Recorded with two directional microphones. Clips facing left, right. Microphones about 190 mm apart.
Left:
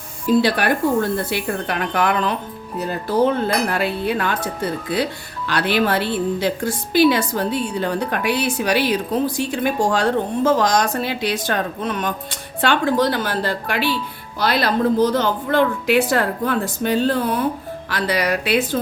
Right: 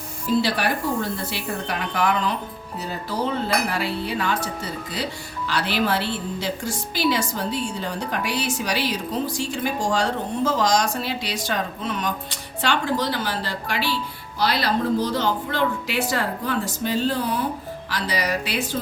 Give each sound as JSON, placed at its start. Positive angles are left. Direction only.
{"t": 0.4, "sound": "a woman's voice", "side_deg": 55}